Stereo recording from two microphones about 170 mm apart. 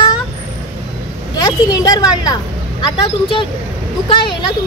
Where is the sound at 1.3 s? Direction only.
25° left (ahead or behind).